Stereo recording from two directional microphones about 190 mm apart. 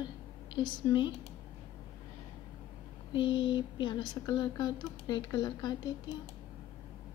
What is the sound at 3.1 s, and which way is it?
Speech, 25° left (ahead or behind).